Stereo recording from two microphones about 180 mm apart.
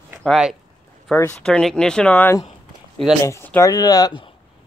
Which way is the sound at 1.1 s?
10° left (ahead or behind).